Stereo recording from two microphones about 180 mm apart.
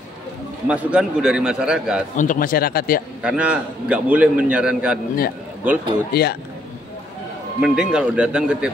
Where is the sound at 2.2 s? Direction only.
50° left (ahead or behind).